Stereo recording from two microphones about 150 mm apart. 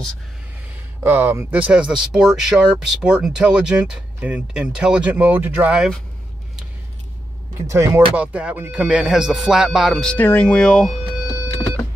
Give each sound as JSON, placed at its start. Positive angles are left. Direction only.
{"t": 1.0, "sound": "speech", "side_deg": -15}
{"t": 7.5, "sound": "speech", "side_deg": -20}
{"t": 8.2, "sound": "speech", "side_deg": -10}